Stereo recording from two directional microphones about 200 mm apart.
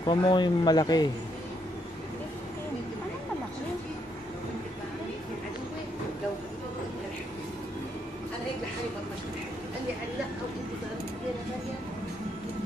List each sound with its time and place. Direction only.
0.0 s speech: 25° left (ahead or behind)